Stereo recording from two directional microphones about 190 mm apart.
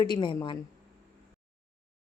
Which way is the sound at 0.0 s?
25° left (ahead or behind).